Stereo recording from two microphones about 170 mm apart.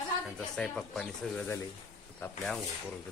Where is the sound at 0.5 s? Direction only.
5° left (ahead or behind).